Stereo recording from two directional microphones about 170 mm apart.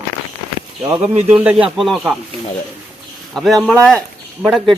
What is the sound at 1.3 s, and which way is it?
Speech, 5° right (ahead or behind).